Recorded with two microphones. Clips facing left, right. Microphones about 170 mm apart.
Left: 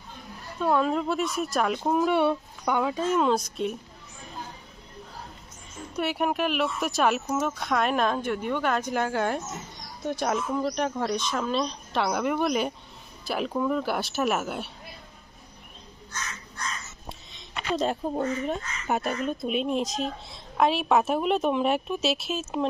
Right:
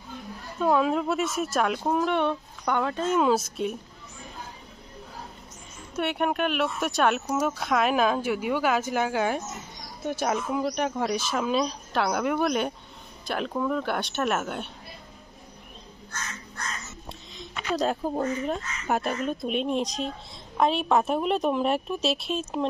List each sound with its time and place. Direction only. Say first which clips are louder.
0.6 s speech: right 1 dB; 5° right (ahead or behind)
5.9 s speech: even; centre (ahead or behind)
16.1 s crow: even; 55° right (ahead or behind)
17.3 s speech: even; centre (ahead or behind)